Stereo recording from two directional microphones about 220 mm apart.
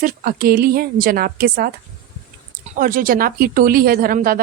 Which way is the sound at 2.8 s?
40° right (ahead or behind).